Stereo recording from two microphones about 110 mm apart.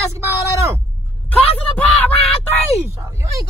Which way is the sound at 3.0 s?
30° right (ahead or behind).